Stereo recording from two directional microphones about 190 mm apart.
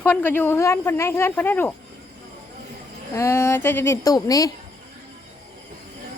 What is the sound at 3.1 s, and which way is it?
Speech, 15° left (ahead or behind).